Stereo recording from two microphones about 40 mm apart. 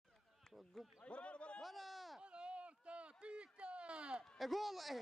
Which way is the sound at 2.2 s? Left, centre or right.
Right.